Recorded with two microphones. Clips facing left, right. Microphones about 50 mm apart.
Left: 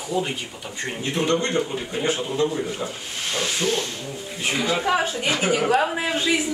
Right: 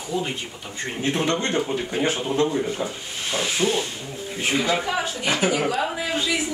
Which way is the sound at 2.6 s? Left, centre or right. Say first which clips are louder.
Right 2 dB; centre.